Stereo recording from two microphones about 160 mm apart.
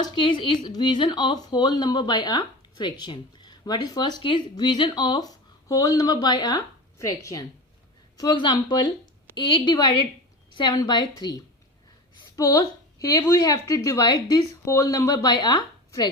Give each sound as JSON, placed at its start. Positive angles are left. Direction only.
{"t": 0.1, "sound": "speech", "side_deg": 30}
{"t": 12.4, "sound": "speech", "side_deg": 20}